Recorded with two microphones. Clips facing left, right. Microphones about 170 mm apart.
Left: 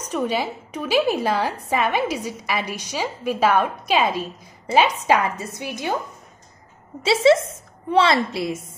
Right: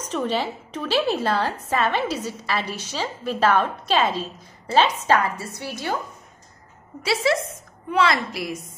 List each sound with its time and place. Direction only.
0.0 s a woman's voice: 10° left (ahead or behind)
7.0 s a woman's voice: 25° left (ahead or behind)